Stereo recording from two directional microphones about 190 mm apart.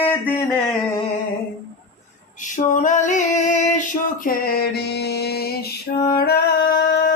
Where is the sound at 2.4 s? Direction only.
40° left (ahead or behind).